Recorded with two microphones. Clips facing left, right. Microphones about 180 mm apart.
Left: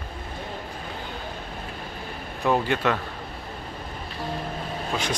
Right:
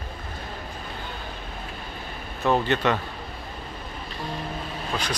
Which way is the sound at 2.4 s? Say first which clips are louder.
Right 1 dB; 10° left (ahead or behind).